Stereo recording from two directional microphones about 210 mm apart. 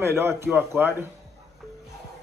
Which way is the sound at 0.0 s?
10° right (ahead or behind).